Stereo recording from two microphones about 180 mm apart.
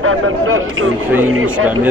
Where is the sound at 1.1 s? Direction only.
10° right (ahead or behind).